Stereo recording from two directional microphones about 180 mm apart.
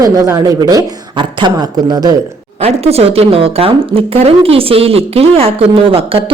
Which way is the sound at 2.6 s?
35° right (ahead or behind).